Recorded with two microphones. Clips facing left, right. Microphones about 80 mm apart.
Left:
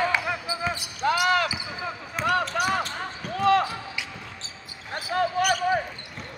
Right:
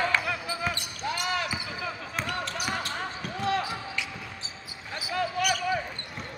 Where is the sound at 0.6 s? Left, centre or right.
Centre.